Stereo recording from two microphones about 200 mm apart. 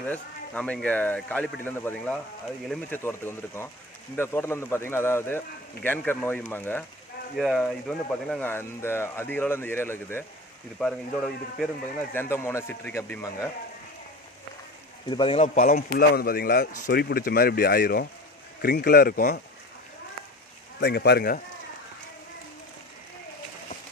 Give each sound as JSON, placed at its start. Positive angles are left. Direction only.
{"t": 0.1, "sound": "speech", "side_deg": 5}
{"t": 15.1, "sound": "speech", "side_deg": 25}
{"t": 15.4, "sound": "speech", "side_deg": 40}
{"t": 20.7, "sound": "speech", "side_deg": 55}